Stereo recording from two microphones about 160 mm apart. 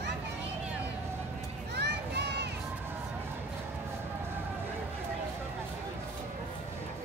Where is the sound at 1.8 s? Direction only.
90° right.